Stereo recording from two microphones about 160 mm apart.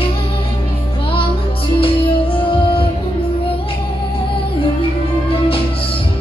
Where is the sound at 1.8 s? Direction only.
35° left (ahead or behind).